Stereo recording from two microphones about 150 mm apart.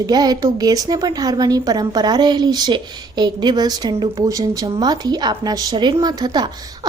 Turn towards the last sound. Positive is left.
turn(degrees=-30)  # may be behind; listen again after turning